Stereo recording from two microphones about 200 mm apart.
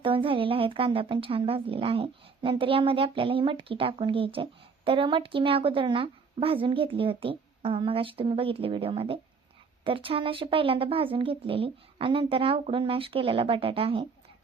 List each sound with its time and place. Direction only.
0.0 s speech: 25° right (ahead or behind)